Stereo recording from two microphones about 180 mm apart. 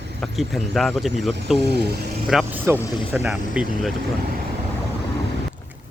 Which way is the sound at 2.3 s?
Centre (ahead or behind).